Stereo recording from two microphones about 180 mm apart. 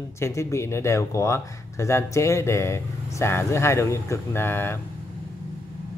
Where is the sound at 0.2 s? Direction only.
15° left (ahead or behind).